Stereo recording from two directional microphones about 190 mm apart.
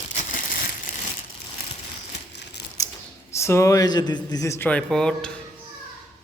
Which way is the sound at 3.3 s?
15° left (ahead or behind).